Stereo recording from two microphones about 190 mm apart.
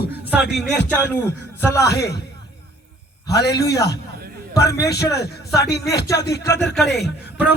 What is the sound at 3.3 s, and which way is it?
Music, 60° left (ahead or behind).